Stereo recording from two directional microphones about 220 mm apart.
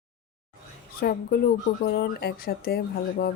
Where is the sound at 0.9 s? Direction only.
40° left (ahead or behind).